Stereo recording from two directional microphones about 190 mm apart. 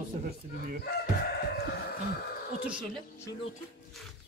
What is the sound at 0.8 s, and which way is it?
Speech, 50° left (ahead or behind).